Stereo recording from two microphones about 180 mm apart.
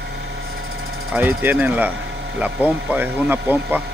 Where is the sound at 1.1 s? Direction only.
10° right (ahead or behind).